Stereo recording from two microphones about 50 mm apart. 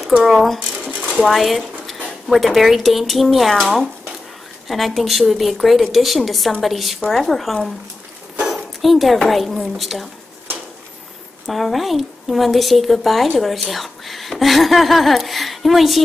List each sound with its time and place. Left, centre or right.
0.2 s a woman's voice: centre
0.7 s dishes: right
1.1 s a woman's voice: centre
8.5 s a sound: centre
9.3 s a woman's voice: centre
11.4 s a woman's voice: centre